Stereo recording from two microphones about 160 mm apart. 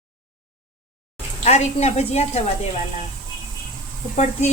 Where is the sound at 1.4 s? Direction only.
45° left (ahead or behind).